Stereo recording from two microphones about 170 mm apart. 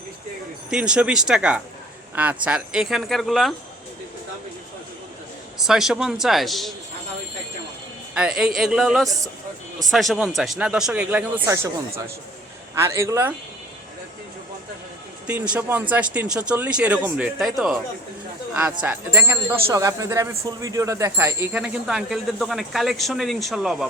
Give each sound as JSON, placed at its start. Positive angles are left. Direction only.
{"t": 0.7, "sound": "speech", "side_deg": -5}
{"t": 5.5, "sound": "speech", "side_deg": 0}
{"t": 8.1, "sound": "speech", "side_deg": -5}
{"t": 12.7, "sound": "speech", "side_deg": -15}
{"t": 15.3, "sound": "speech", "side_deg": -10}
{"t": 18.8, "sound": "speech", "side_deg": -10}
{"t": 21.5, "sound": "speech", "side_deg": -5}